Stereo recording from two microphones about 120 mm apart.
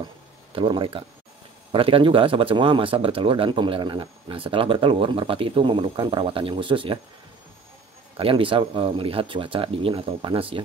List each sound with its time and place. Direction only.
0.6 s speech: 45° right (ahead or behind)
8.2 s speech: 45° right (ahead or behind)